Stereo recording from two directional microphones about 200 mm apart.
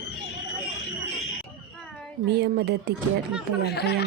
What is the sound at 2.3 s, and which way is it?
Speech, 55° right (ahead or behind).